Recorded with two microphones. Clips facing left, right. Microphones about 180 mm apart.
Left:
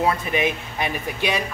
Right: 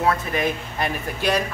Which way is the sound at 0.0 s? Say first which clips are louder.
Left 1 dB; 15° left (ahead or behind).